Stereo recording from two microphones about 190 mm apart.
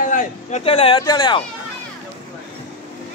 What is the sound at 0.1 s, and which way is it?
Speech, 40° left (ahead or behind).